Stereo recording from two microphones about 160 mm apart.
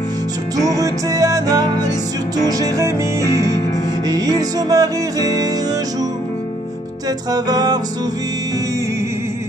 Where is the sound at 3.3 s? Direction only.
20° left (ahead or behind).